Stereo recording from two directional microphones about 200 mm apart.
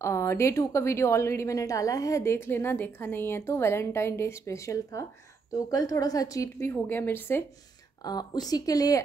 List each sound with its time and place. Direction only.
0.0 s a woman's voice: 15° left (ahead or behind)